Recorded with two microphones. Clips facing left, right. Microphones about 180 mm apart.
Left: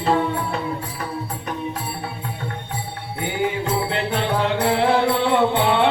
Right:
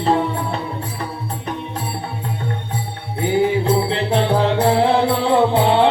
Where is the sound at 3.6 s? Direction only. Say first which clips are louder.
Right 4 dB; 30° right (ahead or behind).